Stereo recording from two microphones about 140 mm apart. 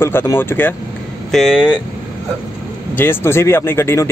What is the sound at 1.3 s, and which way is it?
Speech, 5° right (ahead or behind).